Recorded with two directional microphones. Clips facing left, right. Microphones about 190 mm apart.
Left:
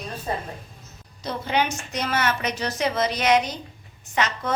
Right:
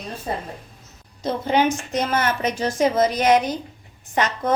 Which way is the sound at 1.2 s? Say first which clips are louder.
Right 5 dB; 45° right (ahead or behind).